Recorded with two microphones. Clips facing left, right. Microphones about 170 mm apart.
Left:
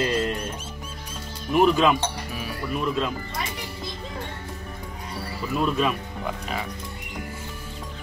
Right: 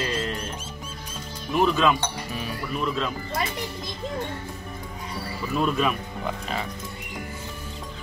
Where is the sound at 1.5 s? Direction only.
10° left (ahead or behind).